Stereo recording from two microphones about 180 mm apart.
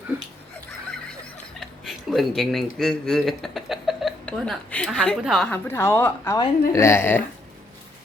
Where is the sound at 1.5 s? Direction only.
Centre (ahead or behind).